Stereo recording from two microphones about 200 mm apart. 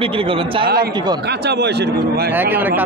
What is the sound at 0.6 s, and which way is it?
A man's voice, 50° right (ahead or behind).